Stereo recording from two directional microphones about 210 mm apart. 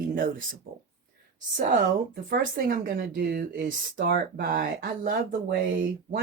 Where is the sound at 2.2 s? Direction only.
45° right (ahead or behind).